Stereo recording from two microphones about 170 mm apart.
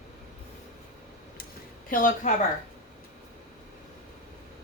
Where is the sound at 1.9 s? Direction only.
55° left (ahead or behind).